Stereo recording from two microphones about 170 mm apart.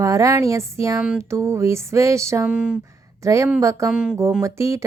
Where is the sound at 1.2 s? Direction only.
15° right (ahead or behind).